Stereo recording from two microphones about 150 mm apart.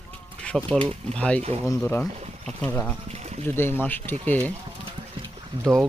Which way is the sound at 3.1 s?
45° right (ahead or behind).